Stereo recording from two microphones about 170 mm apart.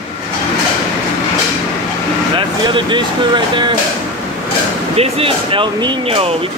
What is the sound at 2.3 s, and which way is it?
Speech, 30° right (ahead or behind).